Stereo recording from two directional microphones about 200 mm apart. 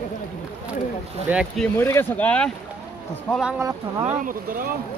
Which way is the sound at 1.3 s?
5° right (ahead or behind).